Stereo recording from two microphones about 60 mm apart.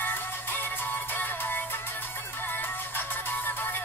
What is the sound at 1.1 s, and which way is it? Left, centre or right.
Music, left.